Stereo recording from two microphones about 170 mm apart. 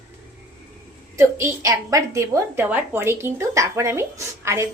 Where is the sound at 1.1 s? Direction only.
15° right (ahead or behind).